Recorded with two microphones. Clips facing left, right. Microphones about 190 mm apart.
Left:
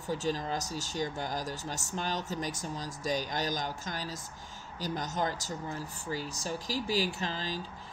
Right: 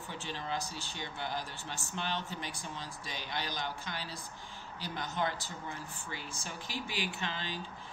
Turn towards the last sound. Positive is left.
turn(degrees=40)  # may be behind; listen again after turning